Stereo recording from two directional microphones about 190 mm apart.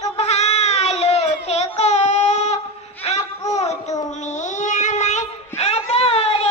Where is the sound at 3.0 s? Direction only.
35° left (ahead or behind).